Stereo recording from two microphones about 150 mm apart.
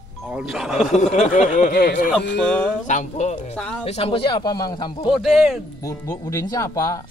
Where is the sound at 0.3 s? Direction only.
5° right (ahead or behind).